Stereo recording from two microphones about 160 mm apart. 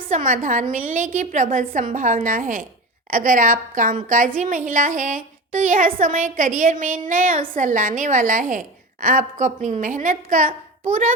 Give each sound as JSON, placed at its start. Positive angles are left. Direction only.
{"t": 0.1, "sound": "a woman's voice", "side_deg": -55}